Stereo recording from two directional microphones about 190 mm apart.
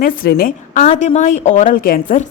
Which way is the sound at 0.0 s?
45° left (ahead or behind).